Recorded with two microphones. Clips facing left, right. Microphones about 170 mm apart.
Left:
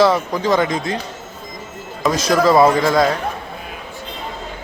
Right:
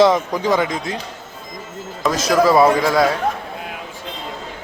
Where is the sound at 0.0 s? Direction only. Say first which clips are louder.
Right 1 dB; 15° right (ahead or behind).